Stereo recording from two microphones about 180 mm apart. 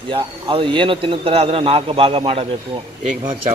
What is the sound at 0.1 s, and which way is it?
Speech, 30° right (ahead or behind).